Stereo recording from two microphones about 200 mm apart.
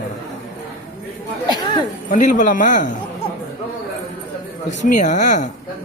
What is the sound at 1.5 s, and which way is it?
Speech, 25° left (ahead or behind).